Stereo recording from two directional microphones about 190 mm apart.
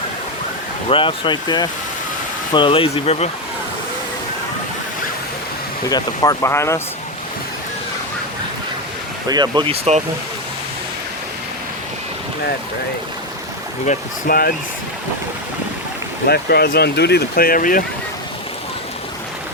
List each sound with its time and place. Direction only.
0.9 s speech: 25° left (ahead or behind)
5.9 s speech: 15° left (ahead or behind)
9.3 s speech: 20° right (ahead or behind)
13.8 s speech: 45° left (ahead or behind)
16.2 s speech: 55° left (ahead or behind)